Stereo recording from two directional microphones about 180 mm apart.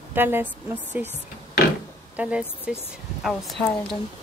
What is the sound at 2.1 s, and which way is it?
A woman's voice, 5° right (ahead or behind).